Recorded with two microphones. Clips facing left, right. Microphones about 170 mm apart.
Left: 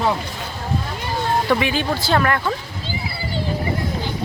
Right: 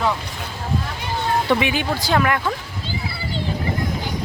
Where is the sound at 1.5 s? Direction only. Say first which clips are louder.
Even; 15° right (ahead or behind).